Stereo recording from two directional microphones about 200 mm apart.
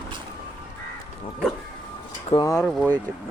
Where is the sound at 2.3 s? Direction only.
15° left (ahead or behind).